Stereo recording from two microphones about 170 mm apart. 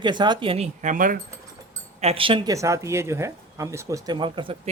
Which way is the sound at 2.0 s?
35° right (ahead or behind).